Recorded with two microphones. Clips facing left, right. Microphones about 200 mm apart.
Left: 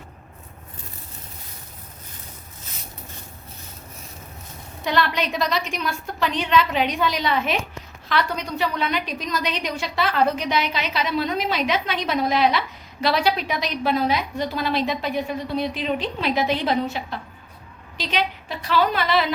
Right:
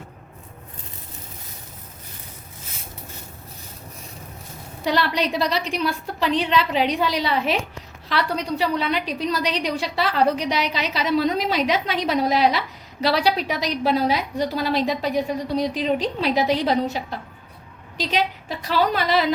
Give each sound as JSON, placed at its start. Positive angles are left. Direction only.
{"t": 4.9, "sound": "a woman's voice", "side_deg": -35}